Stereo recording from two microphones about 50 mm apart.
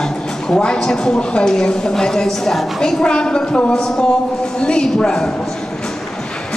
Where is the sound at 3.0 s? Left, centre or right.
Centre.